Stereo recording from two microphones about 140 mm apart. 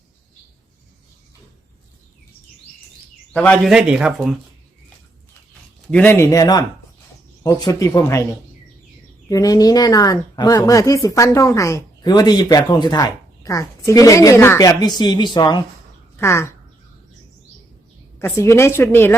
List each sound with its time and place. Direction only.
3.3 s a woman's voice: 10° left (ahead or behind)
3.6 s speech: 5° right (ahead or behind)
5.9 s speech: 15° left (ahead or behind)
9.3 s speech: 25° left (ahead or behind)
16.2 s speech: 20° left (ahead or behind)
18.2 s a woman's voice: 20° left (ahead or behind)